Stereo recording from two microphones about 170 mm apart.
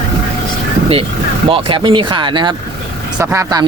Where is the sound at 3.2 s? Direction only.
15° right (ahead or behind).